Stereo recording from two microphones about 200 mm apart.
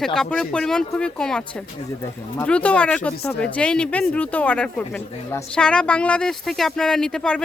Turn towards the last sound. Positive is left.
turn(degrees=5)  # may be behind; listen again after turning